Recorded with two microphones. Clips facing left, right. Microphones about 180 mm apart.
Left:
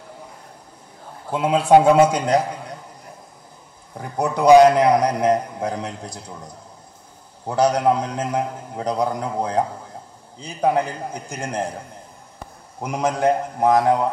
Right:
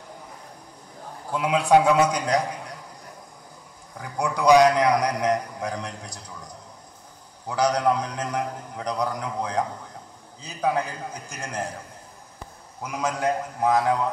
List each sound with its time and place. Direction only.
1.3 s a man's voice: 25° left (ahead or behind)
3.9 s a man's voice: 25° left (ahead or behind)
12.8 s a man's voice: 30° left (ahead or behind)